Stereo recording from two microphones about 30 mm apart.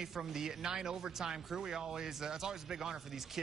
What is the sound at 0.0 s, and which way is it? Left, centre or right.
Speech, centre.